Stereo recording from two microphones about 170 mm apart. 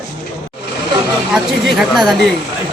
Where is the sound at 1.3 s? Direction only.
Centre (ahead or behind).